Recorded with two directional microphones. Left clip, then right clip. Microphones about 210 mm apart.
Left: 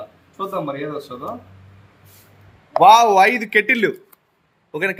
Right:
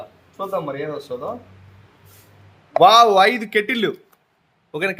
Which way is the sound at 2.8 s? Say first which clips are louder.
Left 1 dB; 20° right (ahead or behind).